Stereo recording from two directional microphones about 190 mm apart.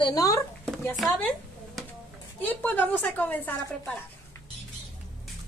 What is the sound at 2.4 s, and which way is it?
A woman's voice, 10° left (ahead or behind).